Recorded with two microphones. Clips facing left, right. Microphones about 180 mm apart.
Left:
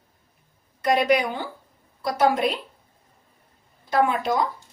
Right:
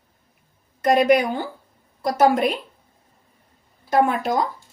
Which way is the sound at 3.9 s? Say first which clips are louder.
Right 2 dB; 50° right (ahead or behind).